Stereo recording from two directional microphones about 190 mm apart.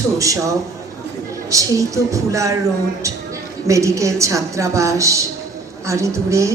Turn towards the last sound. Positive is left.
turn(degrees=-15)  # may be behind; listen again after turning